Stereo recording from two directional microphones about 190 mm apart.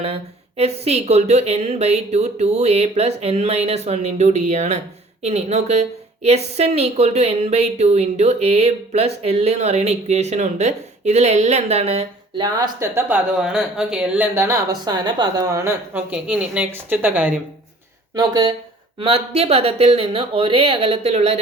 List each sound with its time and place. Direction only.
0.0 s speech: 30° right (ahead or behind)
12.5 s speech: 20° right (ahead or behind)
18.1 s speech: 20° right (ahead or behind)
18.9 s speech: 30° right (ahead or behind)